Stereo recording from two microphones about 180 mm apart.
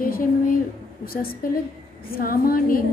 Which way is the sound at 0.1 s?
50° left (ahead or behind).